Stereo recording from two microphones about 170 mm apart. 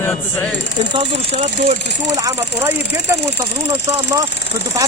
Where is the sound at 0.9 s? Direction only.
35° right (ahead or behind).